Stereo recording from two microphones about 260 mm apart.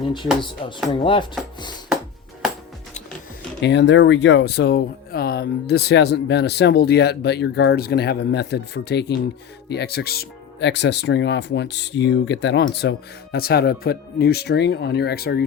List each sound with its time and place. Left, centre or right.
0.9 s chopping: centre
3.6 s speech: left